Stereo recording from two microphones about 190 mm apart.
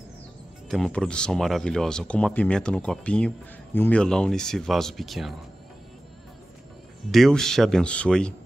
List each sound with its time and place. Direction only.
0.7 s speech: centre (ahead or behind)
7.1 s speech: centre (ahead or behind)